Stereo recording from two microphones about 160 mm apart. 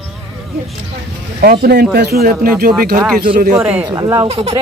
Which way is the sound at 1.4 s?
70° right (ahead or behind).